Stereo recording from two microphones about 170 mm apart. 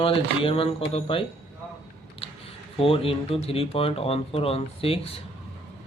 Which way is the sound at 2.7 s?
35° left (ahead or behind).